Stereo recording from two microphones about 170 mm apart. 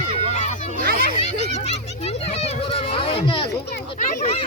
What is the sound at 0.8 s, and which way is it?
Speech, 60° right (ahead or behind).